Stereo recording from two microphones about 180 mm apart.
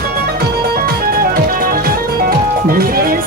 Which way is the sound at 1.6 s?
55° right (ahead or behind).